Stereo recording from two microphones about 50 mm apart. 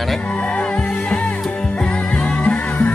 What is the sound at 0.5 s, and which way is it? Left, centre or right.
Music, left.